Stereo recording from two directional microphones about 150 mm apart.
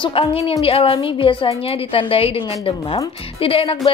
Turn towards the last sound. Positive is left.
turn(degrees=40)  # may be behind; listen again after turning